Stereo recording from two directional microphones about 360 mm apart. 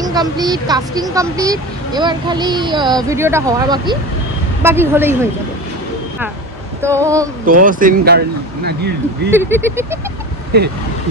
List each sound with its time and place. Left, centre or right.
0.0 s speech: centre
6.8 s speech: centre
7.6 s speech: right
9.3 s speech: centre
10.5 s speech: right